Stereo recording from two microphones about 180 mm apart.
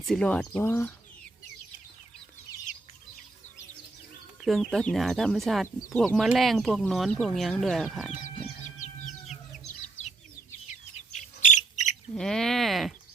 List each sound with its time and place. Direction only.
0.0 s speech: 5° left (ahead or behind)
4.4 s speech: centre (ahead or behind)
8.1 s chicken: 45° left (ahead or behind)
10.9 s bird: 40° left (ahead or behind)
12.1 s speech: 5° left (ahead or behind)